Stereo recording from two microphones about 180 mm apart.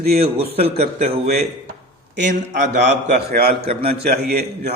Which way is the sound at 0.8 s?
35° right (ahead or behind).